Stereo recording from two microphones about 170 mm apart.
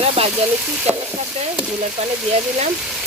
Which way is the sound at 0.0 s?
35° right (ahead or behind).